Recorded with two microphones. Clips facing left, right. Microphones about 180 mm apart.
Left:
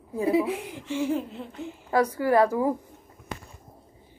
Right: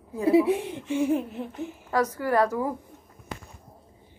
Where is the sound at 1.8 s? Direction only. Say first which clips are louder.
Left 3 dB; 15° left (ahead or behind).